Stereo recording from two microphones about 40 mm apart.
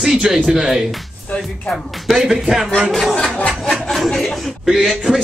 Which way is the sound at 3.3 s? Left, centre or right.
Left.